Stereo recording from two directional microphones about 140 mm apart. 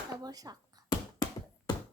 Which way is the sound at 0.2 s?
25° right (ahead or behind).